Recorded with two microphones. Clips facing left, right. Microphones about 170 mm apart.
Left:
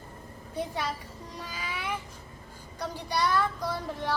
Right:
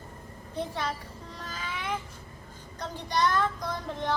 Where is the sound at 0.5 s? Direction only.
10° left (ahead or behind).